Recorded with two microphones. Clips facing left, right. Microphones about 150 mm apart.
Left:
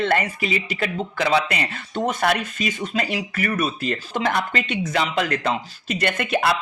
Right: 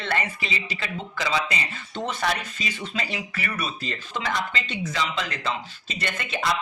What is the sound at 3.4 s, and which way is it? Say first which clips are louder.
Speech: left 9 dB; 45° left (ahead or behind).